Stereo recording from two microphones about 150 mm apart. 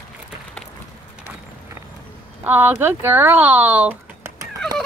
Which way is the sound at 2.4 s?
15° right (ahead or behind).